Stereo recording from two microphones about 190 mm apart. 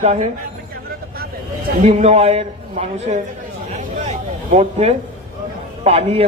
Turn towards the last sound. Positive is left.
turn(degrees=-35)  # may be behind; listen again after turning